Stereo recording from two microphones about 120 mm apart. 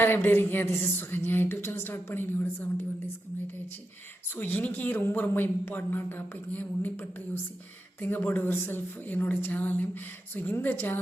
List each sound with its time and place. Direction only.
0.0 s a woman's voice: 15° left (ahead or behind)
4.4 s a woman's voice: 15° left (ahead or behind)